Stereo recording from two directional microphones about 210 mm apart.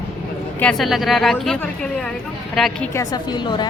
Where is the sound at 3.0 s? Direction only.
20° left (ahead or behind).